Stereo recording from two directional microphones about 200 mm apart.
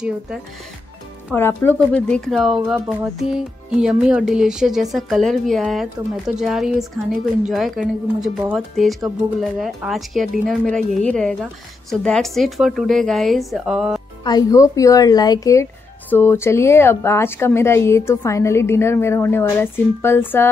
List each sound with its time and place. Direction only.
1.3 s speech: 10° left (ahead or behind)
14.2 s speech: 20° left (ahead or behind)